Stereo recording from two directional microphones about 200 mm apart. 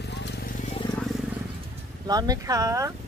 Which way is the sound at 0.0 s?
60° left (ahead or behind).